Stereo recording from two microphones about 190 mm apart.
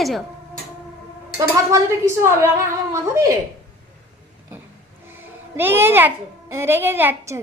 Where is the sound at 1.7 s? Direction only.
15° right (ahead or behind).